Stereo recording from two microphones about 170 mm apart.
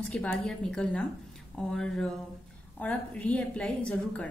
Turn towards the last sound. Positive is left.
turn(degrees=5)  # may be behind; listen again after turning